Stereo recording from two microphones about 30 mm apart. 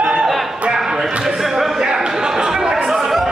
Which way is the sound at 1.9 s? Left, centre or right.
Centre.